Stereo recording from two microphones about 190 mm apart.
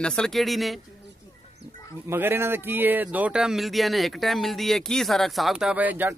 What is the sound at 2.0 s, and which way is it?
Speech, 10° right (ahead or behind).